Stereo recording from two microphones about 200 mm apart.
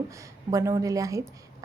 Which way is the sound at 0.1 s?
15° right (ahead or behind).